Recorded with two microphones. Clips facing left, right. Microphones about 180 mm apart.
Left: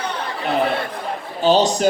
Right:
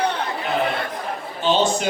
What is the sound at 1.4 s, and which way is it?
Speech, 40° left (ahead or behind).